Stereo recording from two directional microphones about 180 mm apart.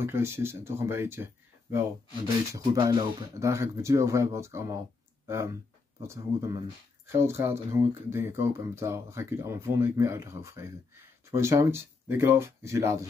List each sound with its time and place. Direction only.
0.0 s speech: 15° right (ahead or behind)